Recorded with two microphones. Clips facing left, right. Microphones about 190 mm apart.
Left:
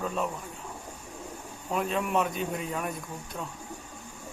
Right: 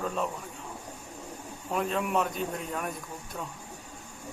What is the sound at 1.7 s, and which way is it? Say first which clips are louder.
Speech: even; centre (ahead or behind).